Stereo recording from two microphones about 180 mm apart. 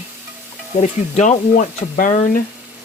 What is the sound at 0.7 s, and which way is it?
Speech, 40° left (ahead or behind).